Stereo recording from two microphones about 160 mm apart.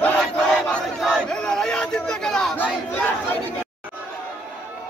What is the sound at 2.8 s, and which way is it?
Crowd, 10° left (ahead or behind).